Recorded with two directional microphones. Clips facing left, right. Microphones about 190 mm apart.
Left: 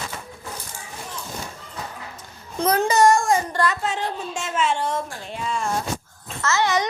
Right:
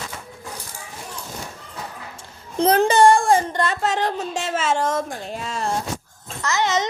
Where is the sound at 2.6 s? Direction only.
30° right (ahead or behind).